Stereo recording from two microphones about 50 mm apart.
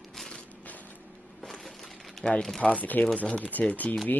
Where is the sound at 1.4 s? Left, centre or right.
Centre.